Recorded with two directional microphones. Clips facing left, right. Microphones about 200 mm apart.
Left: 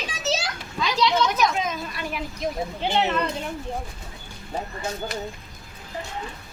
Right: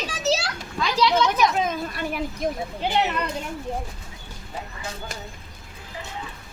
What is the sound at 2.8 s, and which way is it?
Speech, 5° right (ahead or behind).